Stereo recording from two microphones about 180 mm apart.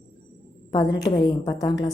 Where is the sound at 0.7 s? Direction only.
25° left (ahead or behind).